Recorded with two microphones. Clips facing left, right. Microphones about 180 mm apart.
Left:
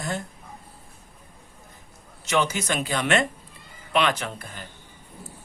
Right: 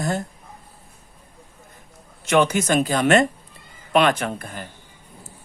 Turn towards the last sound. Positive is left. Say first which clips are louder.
# right 6 dB
turn(degrees=-50)  # may be behind; listen again after turning